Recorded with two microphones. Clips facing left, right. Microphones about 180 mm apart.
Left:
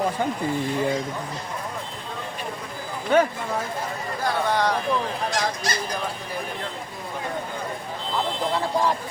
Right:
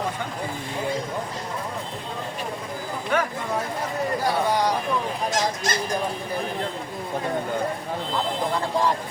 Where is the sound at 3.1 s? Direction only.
25° left (ahead or behind).